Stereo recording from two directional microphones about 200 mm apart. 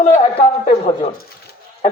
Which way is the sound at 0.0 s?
30° left (ahead or behind).